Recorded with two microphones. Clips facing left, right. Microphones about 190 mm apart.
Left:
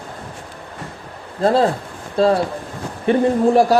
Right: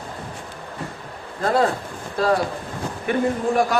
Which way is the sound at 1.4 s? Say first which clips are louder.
Left 4 dB; 30° left (ahead or behind).